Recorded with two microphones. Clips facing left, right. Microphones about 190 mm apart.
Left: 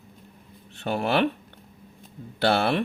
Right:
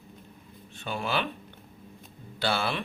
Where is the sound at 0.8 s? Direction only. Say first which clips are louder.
Left 7 dB; 65° left (ahead or behind).